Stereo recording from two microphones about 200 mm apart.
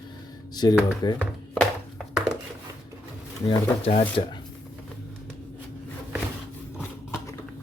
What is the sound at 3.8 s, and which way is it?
Speech, 30° left (ahead or behind).